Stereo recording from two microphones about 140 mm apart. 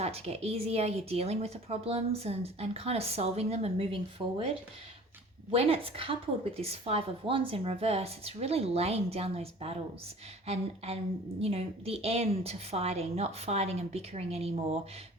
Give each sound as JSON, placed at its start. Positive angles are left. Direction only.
{"t": 0.0, "sound": "speech", "side_deg": -50}
{"t": 5.5, "sound": "speech", "side_deg": -45}